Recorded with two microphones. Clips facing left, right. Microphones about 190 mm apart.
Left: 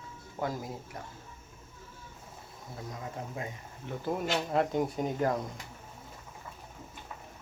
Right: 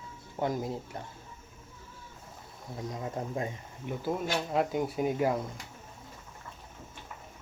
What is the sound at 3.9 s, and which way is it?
Speech, 5° right (ahead or behind).